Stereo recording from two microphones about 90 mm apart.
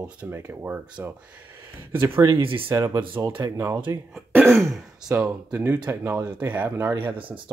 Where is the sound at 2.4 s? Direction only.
75° right (ahead or behind).